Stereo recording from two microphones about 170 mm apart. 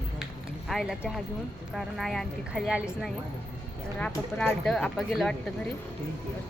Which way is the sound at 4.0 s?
5° left (ahead or behind).